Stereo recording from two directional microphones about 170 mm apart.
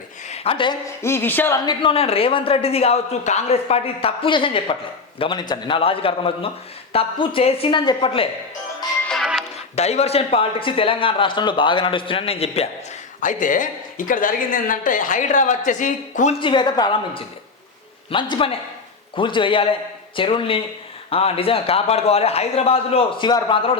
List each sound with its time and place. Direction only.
0.3 s a woman's voice: 35° left (ahead or behind)
1.0 s speech: 15° left (ahead or behind); by 8.3 s 30° left (ahead or behind)
9.0 s music: centre (ahead or behind)
9.7 s speech: 40° left (ahead or behind)
13.1 s speech: 50° left (ahead or behind)
16.4 s a woman's voice: 30° left (ahead or behind)